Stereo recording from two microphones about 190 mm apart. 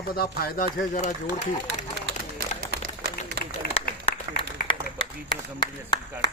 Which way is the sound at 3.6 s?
50° left (ahead or behind).